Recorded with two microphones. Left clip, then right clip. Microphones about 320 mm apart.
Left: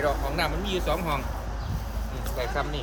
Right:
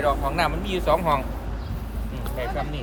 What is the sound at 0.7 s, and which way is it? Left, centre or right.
Speech, centre.